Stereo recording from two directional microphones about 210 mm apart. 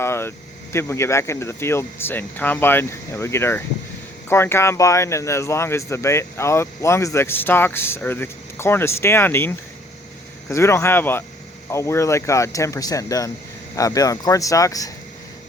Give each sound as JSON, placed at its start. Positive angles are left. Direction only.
{"t": 0.0, "sound": "speech", "side_deg": 10}